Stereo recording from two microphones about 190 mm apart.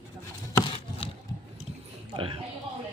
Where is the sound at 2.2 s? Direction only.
25° right (ahead or behind).